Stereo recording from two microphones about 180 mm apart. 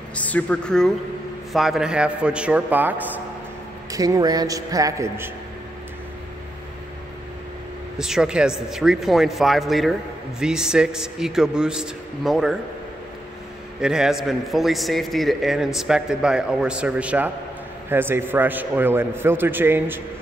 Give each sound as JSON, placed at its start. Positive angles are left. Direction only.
{"t": 0.1, "sound": "a man's voice", "side_deg": 10}
{"t": 8.0, "sound": "a man's voice", "side_deg": -5}
{"t": 13.7, "sound": "a man's voice", "side_deg": -5}